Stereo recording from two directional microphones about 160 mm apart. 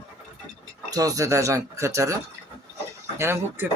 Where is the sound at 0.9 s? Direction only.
20° right (ahead or behind).